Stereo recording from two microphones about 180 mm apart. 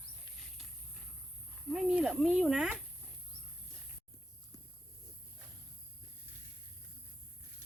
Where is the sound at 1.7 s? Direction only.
5° right (ahead or behind).